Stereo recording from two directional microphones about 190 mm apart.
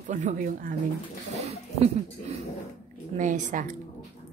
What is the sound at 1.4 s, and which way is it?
A woman's voice, 35° right (ahead or behind).